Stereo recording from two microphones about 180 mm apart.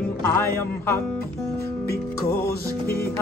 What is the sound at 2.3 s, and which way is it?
Music, 15° left (ahead or behind).